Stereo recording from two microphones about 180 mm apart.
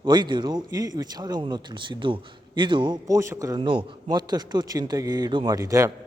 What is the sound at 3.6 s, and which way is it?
A man's voice, 25° right (ahead or behind).